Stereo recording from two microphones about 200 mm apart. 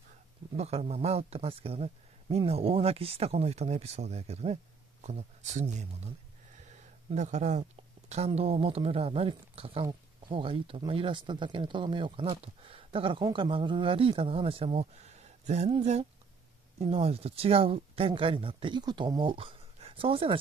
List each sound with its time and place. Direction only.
0.6 s speech: 30° right (ahead or behind)
6.7 s a sound: 35° right (ahead or behind)
8.1 s speech: 30° right (ahead or behind)